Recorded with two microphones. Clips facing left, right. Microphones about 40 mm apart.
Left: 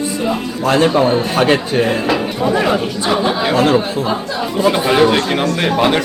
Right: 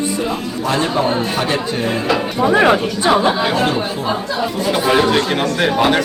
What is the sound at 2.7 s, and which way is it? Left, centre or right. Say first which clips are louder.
Speech: right 2 dB; centre.